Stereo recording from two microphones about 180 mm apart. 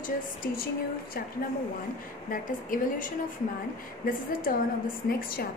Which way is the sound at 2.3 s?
50° left (ahead or behind).